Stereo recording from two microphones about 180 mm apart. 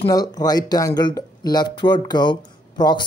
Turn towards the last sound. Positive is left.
turn(degrees=25)  # may be behind; listen again after turning